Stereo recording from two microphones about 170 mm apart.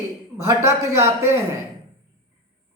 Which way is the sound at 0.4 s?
15° right (ahead or behind).